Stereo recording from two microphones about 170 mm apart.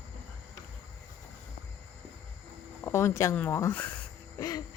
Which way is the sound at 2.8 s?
15° left (ahead or behind).